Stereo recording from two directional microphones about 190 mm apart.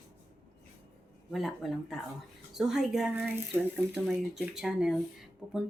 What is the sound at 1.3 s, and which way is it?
Speech, centre (ahead or behind).